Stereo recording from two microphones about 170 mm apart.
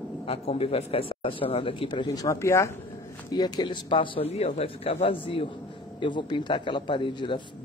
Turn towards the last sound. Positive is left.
turn(degrees=30)  # may be behind; listen again after turning